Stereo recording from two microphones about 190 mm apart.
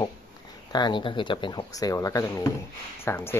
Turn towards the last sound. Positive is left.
turn(degrees=10)  # may be behind; listen again after turning